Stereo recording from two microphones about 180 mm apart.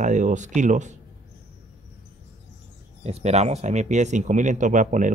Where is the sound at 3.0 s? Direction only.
35° right (ahead or behind).